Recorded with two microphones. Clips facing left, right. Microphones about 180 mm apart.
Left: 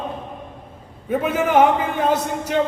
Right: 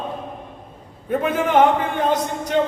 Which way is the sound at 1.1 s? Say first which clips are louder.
Even; 5° left (ahead or behind).